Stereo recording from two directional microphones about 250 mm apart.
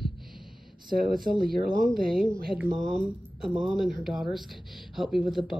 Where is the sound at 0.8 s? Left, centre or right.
Right.